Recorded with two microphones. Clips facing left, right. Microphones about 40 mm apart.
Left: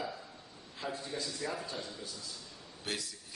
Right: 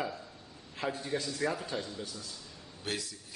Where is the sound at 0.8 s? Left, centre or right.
Right.